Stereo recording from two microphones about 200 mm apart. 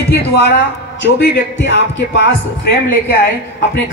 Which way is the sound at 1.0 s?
65° left (ahead or behind).